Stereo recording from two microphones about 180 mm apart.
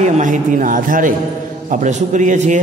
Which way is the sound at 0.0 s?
40° right (ahead or behind).